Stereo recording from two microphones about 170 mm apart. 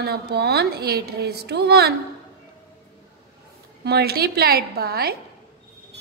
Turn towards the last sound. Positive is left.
turn(degrees=-65)  # may be behind; listen again after turning